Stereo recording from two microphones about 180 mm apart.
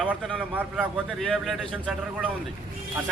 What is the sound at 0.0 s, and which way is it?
A man's voice, 5° right (ahead or behind).